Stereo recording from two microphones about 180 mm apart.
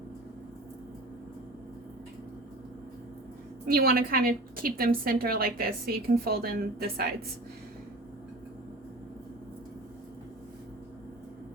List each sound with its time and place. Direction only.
3.7 s a woman's voice: 55° right (ahead or behind)